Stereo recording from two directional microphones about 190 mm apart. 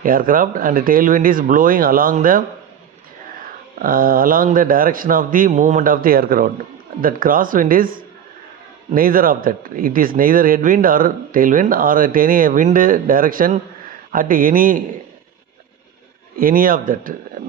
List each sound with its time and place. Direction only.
0.0 s speech: 45° right (ahead or behind)
3.8 s speech: 50° right (ahead or behind)
16.4 s speech: 50° right (ahead or behind)